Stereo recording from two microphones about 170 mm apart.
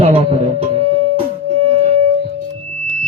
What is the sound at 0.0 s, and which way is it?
Music, 35° right (ahead or behind).